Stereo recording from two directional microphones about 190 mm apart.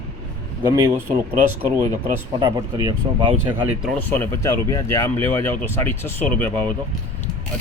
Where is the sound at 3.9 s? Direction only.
10° left (ahead or behind).